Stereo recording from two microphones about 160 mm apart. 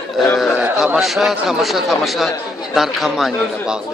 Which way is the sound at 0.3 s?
Centre (ahead or behind).